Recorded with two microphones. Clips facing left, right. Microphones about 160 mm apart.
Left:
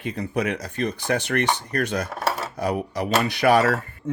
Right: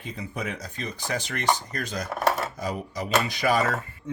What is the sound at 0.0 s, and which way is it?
Speech, 75° left (ahead or behind).